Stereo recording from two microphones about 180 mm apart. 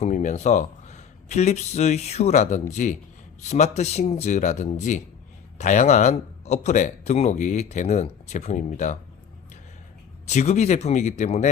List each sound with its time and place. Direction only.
0.0 s speech: 45° left (ahead or behind)
10.2 s speech: 40° left (ahead or behind)